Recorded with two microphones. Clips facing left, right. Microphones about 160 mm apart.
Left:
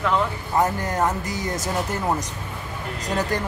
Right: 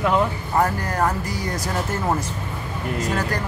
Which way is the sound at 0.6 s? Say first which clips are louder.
Even; 20° left (ahead or behind).